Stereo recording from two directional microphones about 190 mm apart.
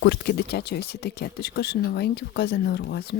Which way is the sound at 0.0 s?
60° left (ahead or behind).